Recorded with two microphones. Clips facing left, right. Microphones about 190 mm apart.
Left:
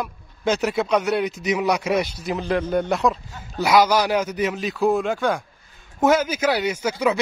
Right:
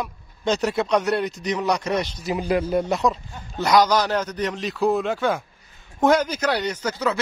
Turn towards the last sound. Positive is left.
turn(degrees=10)  # may be behind; listen again after turning